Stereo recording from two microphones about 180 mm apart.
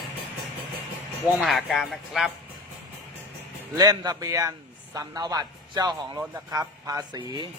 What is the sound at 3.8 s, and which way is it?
A man's voice, 20° right (ahead or behind).